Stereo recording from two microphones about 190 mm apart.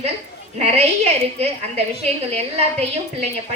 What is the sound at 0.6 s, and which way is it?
A woman's voice, 35° right (ahead or behind).